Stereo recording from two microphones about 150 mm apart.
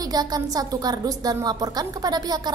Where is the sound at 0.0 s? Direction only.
25° right (ahead or behind).